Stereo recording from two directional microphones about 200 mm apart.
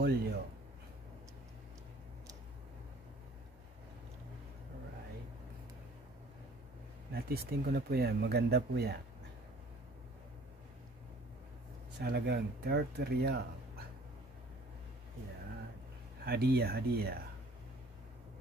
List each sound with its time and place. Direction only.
0.0 s speech: 55° right (ahead or behind)
7.1 s speech: 50° right (ahead or behind)
12.0 s speech: 55° right (ahead or behind)
16.3 s speech: 50° right (ahead or behind)